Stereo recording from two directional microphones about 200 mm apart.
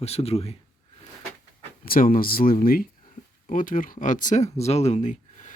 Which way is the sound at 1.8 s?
45° left (ahead or behind).